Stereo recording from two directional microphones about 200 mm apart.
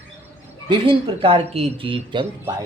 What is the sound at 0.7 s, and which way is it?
Speech, 25° right (ahead or behind).